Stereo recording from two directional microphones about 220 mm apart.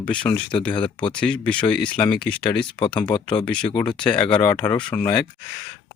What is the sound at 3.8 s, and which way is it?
Speech, 20° left (ahead or behind).